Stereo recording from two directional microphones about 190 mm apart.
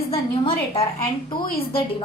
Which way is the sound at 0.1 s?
30° left (ahead or behind).